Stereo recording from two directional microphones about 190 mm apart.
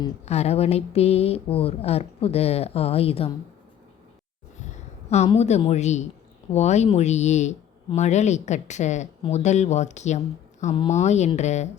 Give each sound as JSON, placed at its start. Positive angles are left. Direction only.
{"t": 0.3, "sound": "speech", "side_deg": 35}
{"t": 5.0, "sound": "speech", "side_deg": 35}